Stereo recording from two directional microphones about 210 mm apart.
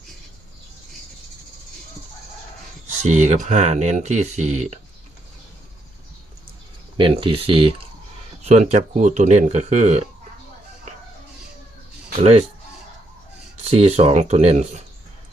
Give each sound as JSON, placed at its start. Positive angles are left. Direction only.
{"t": 3.0, "sound": "speech", "side_deg": -35}
{"t": 6.9, "sound": "speech", "side_deg": -25}
{"t": 12.2, "sound": "speech", "side_deg": -30}
{"t": 13.7, "sound": "speech", "side_deg": -30}